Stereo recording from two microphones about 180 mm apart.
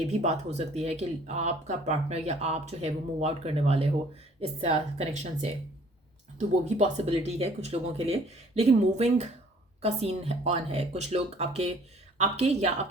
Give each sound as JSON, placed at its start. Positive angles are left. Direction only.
{"t": 0.1, "sound": "speech", "side_deg": -35}
{"t": 6.7, "sound": "speech", "side_deg": -40}